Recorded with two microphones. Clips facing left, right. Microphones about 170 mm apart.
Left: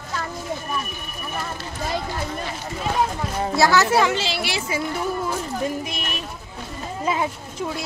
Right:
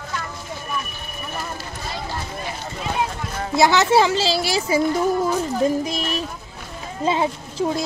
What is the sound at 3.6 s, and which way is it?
A child's voice, 20° right (ahead or behind).